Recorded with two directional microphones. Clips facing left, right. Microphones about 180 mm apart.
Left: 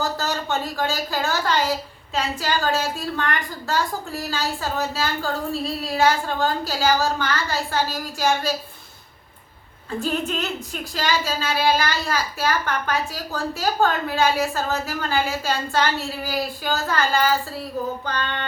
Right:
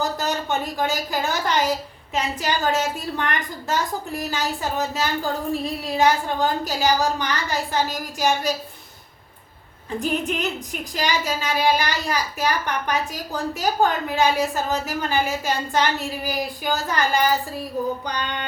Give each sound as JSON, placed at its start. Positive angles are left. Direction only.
{"t": 0.0, "sound": "a sound", "side_deg": -20}
{"t": 2.1, "sound": "speech", "side_deg": -15}
{"t": 10.0, "sound": "speech", "side_deg": -15}